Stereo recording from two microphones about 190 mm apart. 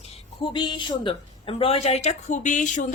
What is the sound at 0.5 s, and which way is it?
A woman's voice, 25° left (ahead or behind).